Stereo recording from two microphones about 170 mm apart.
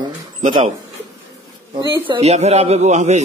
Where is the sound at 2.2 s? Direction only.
40° right (ahead or behind).